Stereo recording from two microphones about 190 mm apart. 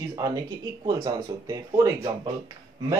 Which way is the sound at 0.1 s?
20° right (ahead or behind).